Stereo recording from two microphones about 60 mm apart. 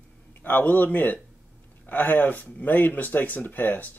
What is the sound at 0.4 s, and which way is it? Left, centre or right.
Speech, left.